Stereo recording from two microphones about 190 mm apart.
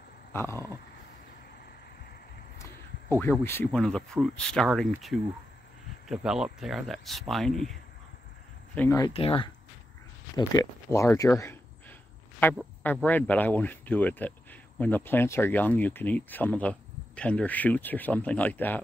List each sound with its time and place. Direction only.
0.3 s dog: 15° left (ahead or behind)
2.6 s speech: 10° left (ahead or behind)
8.7 s speech: 15° left (ahead or behind)
9.1 s speech: 30° left (ahead or behind)
12.8 s speech: 10° left (ahead or behind)